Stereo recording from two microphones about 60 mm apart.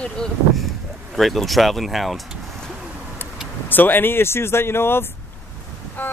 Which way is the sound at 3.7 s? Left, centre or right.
Left.